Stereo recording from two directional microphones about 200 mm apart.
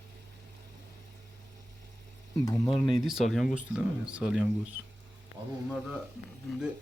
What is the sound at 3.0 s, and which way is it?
Speech, centre (ahead or behind).